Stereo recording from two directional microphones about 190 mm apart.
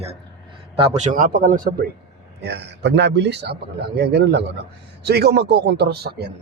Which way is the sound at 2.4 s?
60° right (ahead or behind).